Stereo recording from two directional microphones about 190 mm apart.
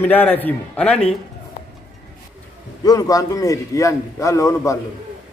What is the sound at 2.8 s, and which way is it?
A man's voice, 20° left (ahead or behind).